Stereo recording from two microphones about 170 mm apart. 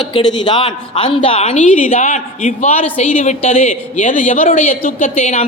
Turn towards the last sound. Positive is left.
turn(degrees=40)  # may be behind; listen again after turning